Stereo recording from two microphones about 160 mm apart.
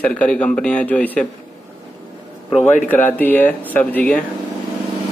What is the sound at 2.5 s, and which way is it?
Speech, 45° left (ahead or behind).